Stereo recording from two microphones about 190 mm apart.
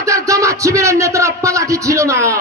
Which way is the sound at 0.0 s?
15° right (ahead or behind).